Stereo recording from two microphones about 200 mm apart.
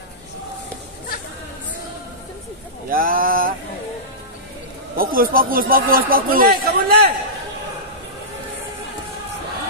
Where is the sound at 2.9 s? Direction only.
45° right (ahead or behind).